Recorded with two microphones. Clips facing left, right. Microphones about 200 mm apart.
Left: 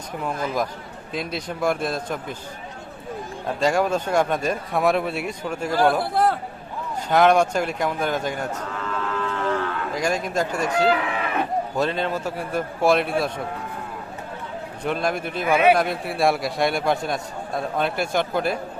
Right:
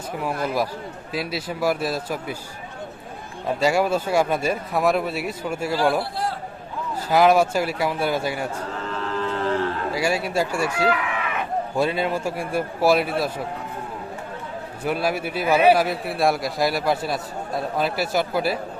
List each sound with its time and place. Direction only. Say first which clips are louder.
0.4 s a man's voice: right 1 dB; 5° right (ahead or behind)
3.6 s a man's voice: even; 10° right (ahead or behind)
6.2 s a sound: left 7 dB; 55° left (ahead or behind)
7.1 s a man's voice: even; 5° right (ahead or behind)
8.9 s cattle: right 1 dB; 30° right (ahead or behind)
9.9 s a man's voice: left 1 dB; 5° right (ahead or behind)
10.8 s livestock: left 2 dB; 35° left (ahead or behind)
11.8 s a man's voice: right 3 dB; 10° right (ahead or behind)
14.8 s a man's voice: right 1 dB; 5° right (ahead or behind)